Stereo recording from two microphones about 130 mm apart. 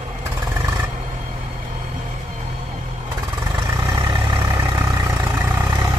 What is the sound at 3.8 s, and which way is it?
Vehicle, 40° right (ahead or behind).